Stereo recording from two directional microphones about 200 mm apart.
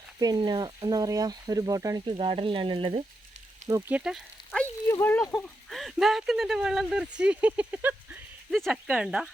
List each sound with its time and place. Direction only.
0.2 s speech: 20° right (ahead or behind)
2.1 s speech: 25° right (ahead or behind)
3.7 s speech: 10° right (ahead or behind)
4.9 s speech: 10° left (ahead or behind)